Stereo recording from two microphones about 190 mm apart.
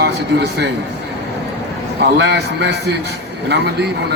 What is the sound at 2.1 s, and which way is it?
A man's voice, 60° right (ahead or behind).